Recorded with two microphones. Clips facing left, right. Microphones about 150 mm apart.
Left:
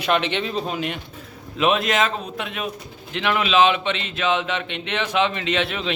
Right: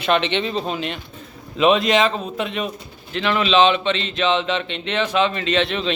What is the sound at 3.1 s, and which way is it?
A man's voice, 15° left (ahead or behind).